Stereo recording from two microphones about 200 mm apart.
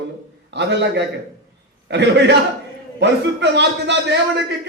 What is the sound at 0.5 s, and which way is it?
Speech, 60° right (ahead or behind).